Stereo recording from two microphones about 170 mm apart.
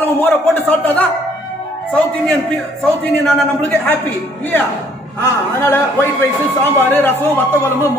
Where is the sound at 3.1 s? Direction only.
5° left (ahead or behind).